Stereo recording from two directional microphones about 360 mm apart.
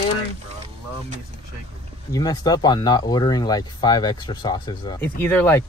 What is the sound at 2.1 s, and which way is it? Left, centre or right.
Speech, centre.